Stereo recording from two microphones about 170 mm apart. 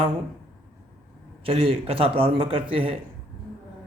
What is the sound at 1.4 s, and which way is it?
A man's voice, 35° right (ahead or behind).